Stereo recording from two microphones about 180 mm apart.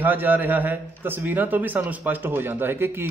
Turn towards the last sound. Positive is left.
turn(degrees=-10)  # may be behind; listen again after turning